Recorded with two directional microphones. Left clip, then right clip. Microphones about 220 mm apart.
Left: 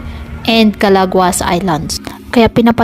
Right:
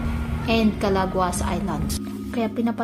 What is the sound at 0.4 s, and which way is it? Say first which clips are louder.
A woman's voice: left 12 dB; 40° left (ahead or behind).